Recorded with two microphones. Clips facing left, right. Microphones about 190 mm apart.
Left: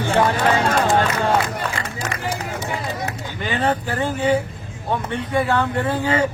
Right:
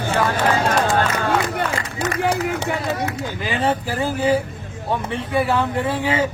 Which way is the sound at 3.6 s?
5° right (ahead or behind).